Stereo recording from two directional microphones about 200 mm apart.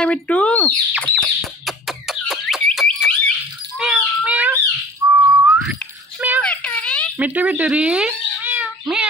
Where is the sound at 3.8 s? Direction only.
5° right (ahead or behind).